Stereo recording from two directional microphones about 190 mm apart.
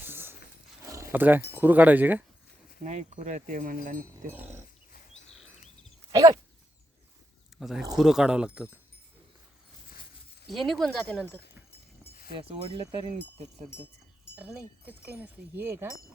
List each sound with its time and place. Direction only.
0.0 s a sound: 10° right (ahead or behind)
0.9 s speech: 15° right (ahead or behind)
2.8 s speech: 40° right (ahead or behind)
4.3 s speech: 10° right (ahead or behind)
6.1 s dog: 20° right (ahead or behind)
7.6 s speech: centre (ahead or behind)
10.4 s speech: centre (ahead or behind)
12.6 s speech: 30° right (ahead or behind)
14.3 s speech: 5° right (ahead or behind)